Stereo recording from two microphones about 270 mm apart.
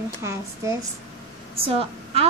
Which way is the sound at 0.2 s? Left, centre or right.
Centre.